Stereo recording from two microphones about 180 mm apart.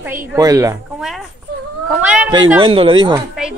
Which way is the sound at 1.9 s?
5° right (ahead or behind).